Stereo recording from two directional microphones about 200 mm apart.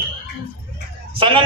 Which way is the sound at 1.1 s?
25° right (ahead or behind).